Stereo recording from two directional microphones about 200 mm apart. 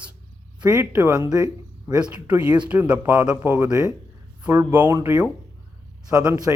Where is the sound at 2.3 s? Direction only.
5° right (ahead or behind).